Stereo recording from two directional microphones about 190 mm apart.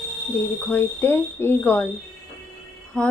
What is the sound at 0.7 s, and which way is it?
Speech, 10° left (ahead or behind).